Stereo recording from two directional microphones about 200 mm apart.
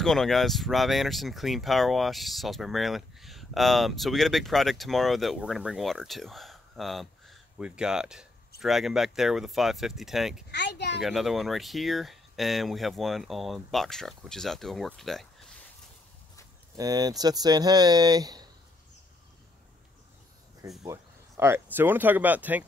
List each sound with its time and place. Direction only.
0.0 s speech: centre (ahead or behind)
10.5 s speech: 55° left (ahead or behind)
11.0 s speech: centre (ahead or behind)
16.7 s speech: 20° right (ahead or behind)
20.8 s speech: 15° right (ahead or behind)